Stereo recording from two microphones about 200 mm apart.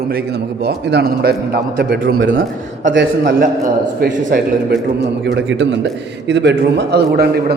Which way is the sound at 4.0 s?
45° right (ahead or behind).